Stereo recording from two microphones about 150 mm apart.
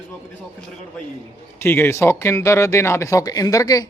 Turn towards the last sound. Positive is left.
turn(degrees=25)  # may be behind; listen again after turning